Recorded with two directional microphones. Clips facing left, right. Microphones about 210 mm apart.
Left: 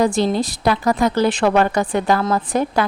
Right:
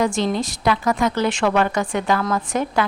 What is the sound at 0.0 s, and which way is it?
Speech, 35° left (ahead or behind).